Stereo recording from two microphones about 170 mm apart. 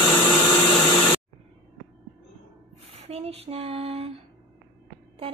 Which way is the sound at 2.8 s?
35° right (ahead or behind).